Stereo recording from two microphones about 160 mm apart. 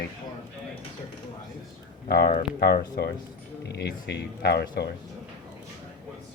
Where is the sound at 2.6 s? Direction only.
75° left (ahead or behind).